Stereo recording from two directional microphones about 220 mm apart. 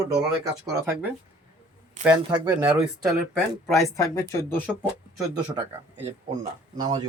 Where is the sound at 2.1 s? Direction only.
15° right (ahead or behind).